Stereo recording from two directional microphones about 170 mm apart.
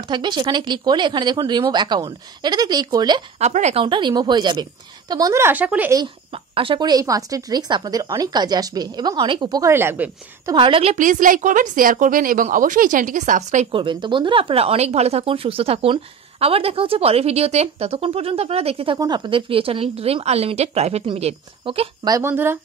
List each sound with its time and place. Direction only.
0.1 s speech: 25° right (ahead or behind)
3.3 s speech: 40° right (ahead or behind)
3.8 s speech: 25° right (ahead or behind); by 5.9 s 10° right (ahead or behind)
6.5 s speech: 30° right (ahead or behind); by 10.5 s 15° right (ahead or behind)
10.5 s a woman's voice: 30° right (ahead or behind)
13.7 s speech: 30° right (ahead or behind)
22.0 s speech: 20° right (ahead or behind)